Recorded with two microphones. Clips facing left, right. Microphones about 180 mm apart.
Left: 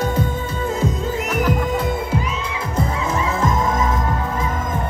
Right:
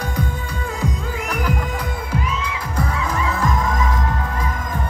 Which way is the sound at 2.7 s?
25° left (ahead or behind).